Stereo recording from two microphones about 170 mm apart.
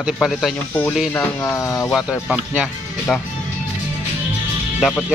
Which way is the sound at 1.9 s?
5° right (ahead or behind).